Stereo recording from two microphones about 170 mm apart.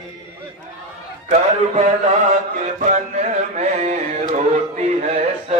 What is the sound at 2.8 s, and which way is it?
Mantra, 45° right (ahead or behind).